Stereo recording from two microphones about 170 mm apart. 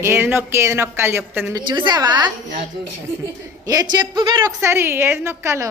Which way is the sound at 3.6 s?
25° right (ahead or behind).